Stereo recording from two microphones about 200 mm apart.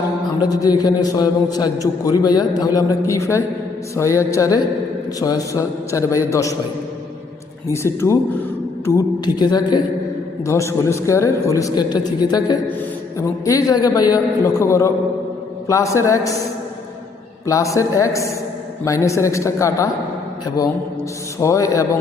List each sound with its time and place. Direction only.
0.4 s a man's voice: 20° left (ahead or behind)
7.7 s a man's voice: 15° left (ahead or behind)
17.4 s a man's voice: 15° left (ahead or behind)
21.4 s a man's voice: 15° left (ahead or behind)